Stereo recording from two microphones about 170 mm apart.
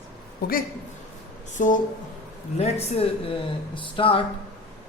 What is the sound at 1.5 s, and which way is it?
Speech, 50° left (ahead or behind).